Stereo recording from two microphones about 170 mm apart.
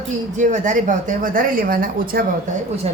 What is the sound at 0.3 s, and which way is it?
A woman's voice, 45° right (ahead or behind).